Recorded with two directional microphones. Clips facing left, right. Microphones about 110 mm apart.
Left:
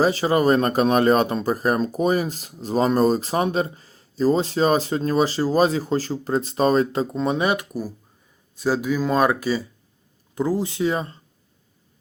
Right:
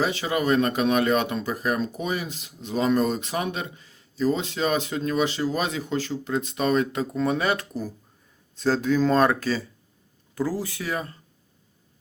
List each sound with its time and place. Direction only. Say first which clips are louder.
0.0 s speech: left 6 dB; 35° left (ahead or behind)